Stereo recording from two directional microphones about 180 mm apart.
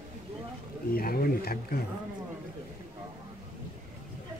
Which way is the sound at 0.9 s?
55° left (ahead or behind).